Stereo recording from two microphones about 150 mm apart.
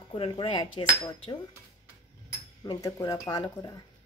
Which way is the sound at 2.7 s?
25° left (ahead or behind).